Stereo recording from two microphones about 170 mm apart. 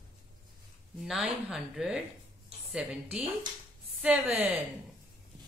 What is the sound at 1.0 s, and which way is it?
A woman's voice, 5° right (ahead or behind).